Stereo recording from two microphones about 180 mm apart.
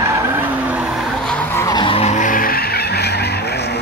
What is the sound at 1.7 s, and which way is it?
Vehicle, 30° left (ahead or behind).